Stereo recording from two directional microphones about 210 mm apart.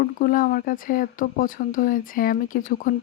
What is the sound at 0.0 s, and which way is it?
Speech, 40° left (ahead or behind).